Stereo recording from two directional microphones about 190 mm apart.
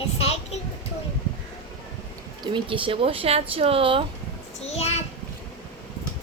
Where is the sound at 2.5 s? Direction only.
25° right (ahead or behind).